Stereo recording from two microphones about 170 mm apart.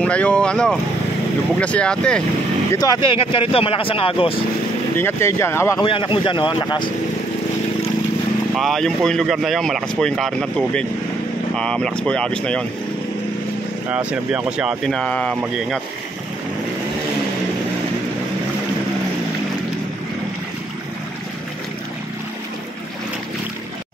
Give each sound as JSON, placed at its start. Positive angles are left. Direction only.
{"t": 0.0, "sound": "speech", "side_deg": 5}
{"t": 2.7, "sound": "speech", "side_deg": 25}
{"t": 4.9, "sound": "speech", "side_deg": 15}
{"t": 5.8, "sound": "a man's voice", "side_deg": 30}
{"t": 8.5, "sound": "speech", "side_deg": 0}
{"t": 13.8, "sound": "speech", "side_deg": -5}